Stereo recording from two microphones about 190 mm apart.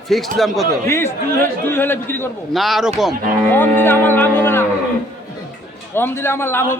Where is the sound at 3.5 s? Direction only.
10° left (ahead or behind).